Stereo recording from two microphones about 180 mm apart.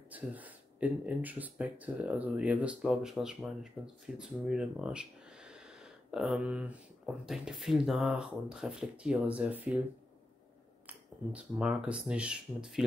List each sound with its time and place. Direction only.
0.1 s speech: 10° right (ahead or behind)
10.9 s speech: 5° right (ahead or behind)